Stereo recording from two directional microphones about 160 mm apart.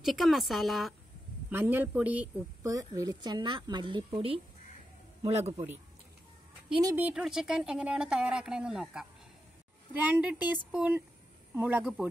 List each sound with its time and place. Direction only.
0.0 s speech: centre (ahead or behind)
1.5 s a man's voice: 10° right (ahead or behind)
2.6 s a woman's voice: 20° right (ahead or behind); by 5.7 s 40° right (ahead or behind)
6.7 s speech: 25° right (ahead or behind)
7.0 s a man's voice: 5° right (ahead or behind)